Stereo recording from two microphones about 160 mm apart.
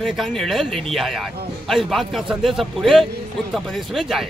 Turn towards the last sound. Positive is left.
turn(degrees=0)  # may be behind; listen again after turning